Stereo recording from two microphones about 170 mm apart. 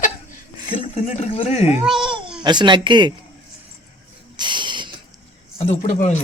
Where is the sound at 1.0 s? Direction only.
45° left (ahead or behind).